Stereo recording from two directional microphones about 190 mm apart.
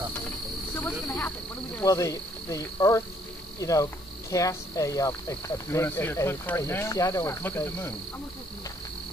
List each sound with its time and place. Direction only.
0.7 s snake: 10° left (ahead or behind)
1.8 s speech: 15° left (ahead or behind)